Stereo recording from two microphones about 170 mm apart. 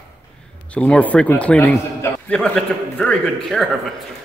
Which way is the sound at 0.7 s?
10° left (ahead or behind).